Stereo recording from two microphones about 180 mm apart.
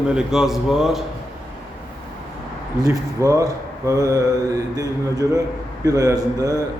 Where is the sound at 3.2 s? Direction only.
20° right (ahead or behind).